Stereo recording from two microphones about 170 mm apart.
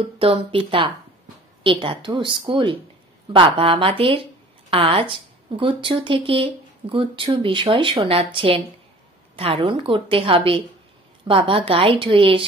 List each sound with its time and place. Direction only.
0.2 s a woman's voice: 30° right (ahead or behind)